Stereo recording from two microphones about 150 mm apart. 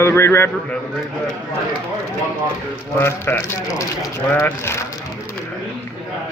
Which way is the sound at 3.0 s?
15° left (ahead or behind).